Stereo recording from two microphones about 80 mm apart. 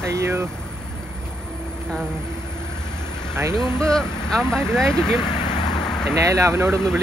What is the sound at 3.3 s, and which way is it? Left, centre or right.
Speech, right.